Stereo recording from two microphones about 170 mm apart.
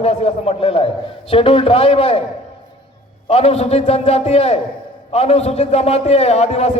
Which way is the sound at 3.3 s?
40° left (ahead or behind).